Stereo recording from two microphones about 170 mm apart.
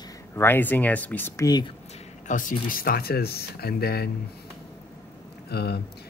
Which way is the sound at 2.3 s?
50° left (ahead or behind).